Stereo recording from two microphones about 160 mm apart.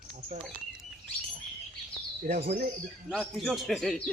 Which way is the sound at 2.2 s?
50° right (ahead or behind).